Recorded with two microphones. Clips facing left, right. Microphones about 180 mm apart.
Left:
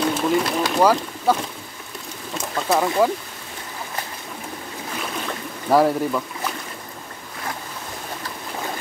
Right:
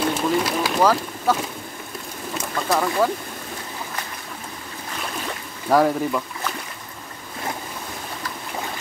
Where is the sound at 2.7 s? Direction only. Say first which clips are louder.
Left 2 dB; 20° left (ahead or behind).